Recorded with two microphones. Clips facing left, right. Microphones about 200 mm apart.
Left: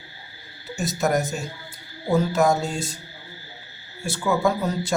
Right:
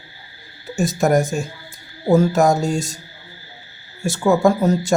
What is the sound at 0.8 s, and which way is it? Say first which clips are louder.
Speech: right 6 dB; 50° right (ahead or behind).